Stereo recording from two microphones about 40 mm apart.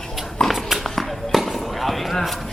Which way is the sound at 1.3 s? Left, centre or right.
Centre.